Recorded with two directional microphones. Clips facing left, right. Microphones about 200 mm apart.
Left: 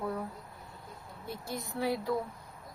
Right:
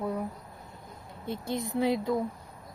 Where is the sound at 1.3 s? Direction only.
25° right (ahead or behind).